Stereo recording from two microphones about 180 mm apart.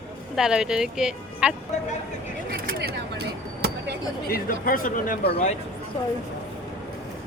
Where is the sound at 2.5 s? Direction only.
55° right (ahead or behind).